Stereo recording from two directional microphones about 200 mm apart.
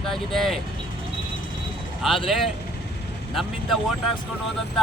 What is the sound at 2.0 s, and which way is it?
Speech, centre (ahead or behind).